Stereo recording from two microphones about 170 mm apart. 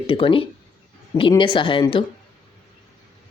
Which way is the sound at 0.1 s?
30° left (ahead or behind).